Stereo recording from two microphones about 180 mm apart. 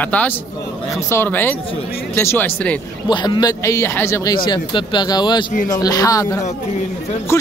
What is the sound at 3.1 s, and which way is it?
Speech, 25° left (ahead or behind).